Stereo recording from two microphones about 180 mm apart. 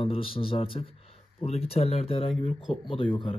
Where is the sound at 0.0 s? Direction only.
30° left (ahead or behind).